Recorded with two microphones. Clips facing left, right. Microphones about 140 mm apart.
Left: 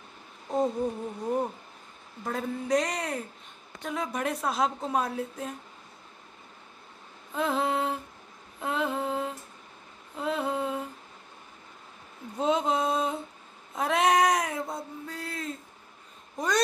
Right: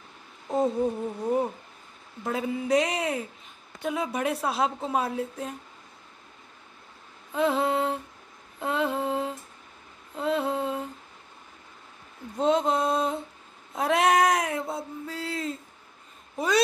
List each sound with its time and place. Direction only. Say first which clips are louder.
1.2 s a woman's voice: right 3 dB; 5° right (ahead or behind)
7.3 s a woman's voice: right 3 dB; centre (ahead or behind)
8.5 s a sound: right 2 dB; centre (ahead or behind)
12.4 s a woman's voice: right 3 dB; centre (ahead or behind)
13.7 s a sound: right 2 dB; centre (ahead or behind)
16.3 s speech: right 3 dB; 5° right (ahead or behind)